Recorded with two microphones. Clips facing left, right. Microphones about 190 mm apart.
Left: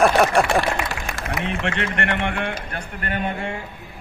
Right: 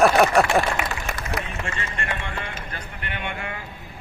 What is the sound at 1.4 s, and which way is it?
A man's voice, 70° left (ahead or behind).